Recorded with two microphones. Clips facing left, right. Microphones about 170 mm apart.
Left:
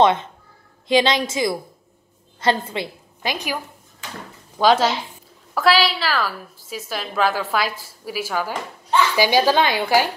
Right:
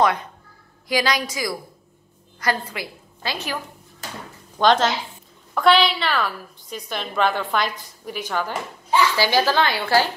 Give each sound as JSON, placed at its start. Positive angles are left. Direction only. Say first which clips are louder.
{"t": 0.0, "sound": "a woman's voice", "louder": "left 4 dB", "side_deg": 25}
{"t": 4.6, "sound": "a woman's voice", "louder": "left 1 dB", "side_deg": 5}